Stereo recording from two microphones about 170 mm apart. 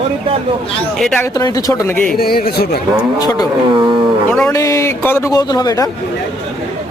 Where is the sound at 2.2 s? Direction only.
65° left (ahead or behind).